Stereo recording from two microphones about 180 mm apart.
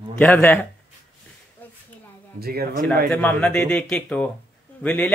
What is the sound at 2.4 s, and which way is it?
Speech, 60° right (ahead or behind).